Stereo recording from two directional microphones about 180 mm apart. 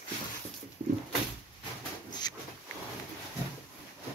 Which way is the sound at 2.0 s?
25° left (ahead or behind).